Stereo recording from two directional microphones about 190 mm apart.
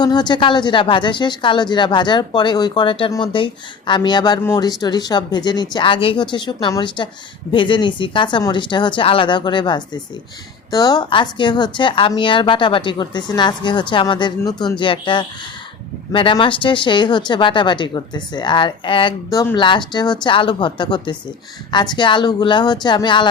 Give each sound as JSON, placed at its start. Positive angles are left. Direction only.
{"t": 0.0, "sound": "speech", "side_deg": 20}